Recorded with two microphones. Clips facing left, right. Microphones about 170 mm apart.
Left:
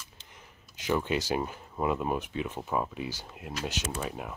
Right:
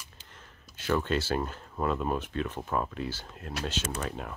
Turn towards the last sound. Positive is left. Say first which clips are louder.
# even
turn(degrees=5)  # may be behind; listen again after turning